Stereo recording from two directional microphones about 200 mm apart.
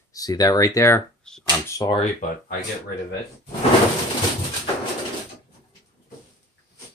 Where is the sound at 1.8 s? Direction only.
25° left (ahead or behind).